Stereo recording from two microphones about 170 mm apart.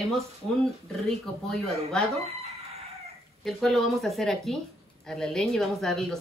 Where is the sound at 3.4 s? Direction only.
Centre (ahead or behind).